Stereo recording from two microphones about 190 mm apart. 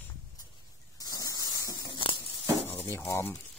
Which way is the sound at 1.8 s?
25° left (ahead or behind).